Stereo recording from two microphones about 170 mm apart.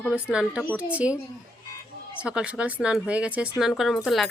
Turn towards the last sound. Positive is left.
turn(degrees=0)  # may be behind; listen again after turning